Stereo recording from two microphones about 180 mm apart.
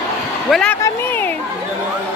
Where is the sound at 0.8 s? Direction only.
15° left (ahead or behind).